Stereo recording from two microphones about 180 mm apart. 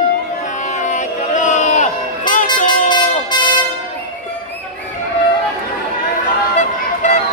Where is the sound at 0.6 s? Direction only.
45° left (ahead or behind).